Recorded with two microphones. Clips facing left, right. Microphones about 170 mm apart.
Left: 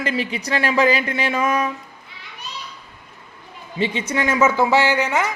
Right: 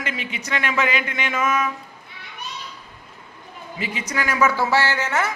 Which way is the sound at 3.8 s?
30° left (ahead or behind).